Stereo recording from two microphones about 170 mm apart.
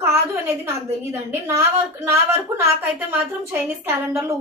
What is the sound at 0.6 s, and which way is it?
A woman's voice, 15° right (ahead or behind).